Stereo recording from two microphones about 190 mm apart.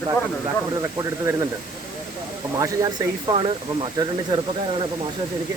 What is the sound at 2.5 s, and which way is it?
Speech, 15° right (ahead or behind).